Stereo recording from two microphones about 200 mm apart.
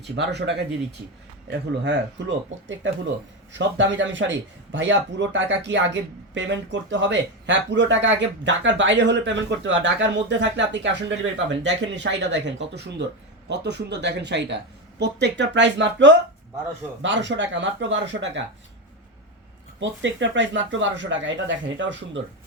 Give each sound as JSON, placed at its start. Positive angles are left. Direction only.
{"t": 0.0, "sound": "a man's voice", "side_deg": -60}
{"t": 19.8, "sound": "speech", "side_deg": -65}